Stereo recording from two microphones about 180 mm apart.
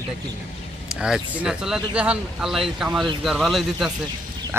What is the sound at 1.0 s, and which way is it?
Speech, 5° right (ahead or behind).